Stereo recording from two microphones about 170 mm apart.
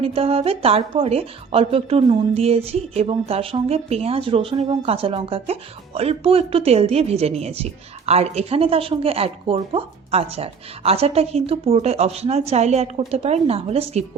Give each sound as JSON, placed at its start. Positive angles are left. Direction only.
{"t": 0.0, "sound": "speech", "side_deg": -35}